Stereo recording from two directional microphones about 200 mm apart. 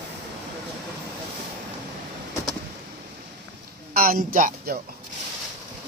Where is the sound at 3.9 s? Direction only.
45° right (ahead or behind).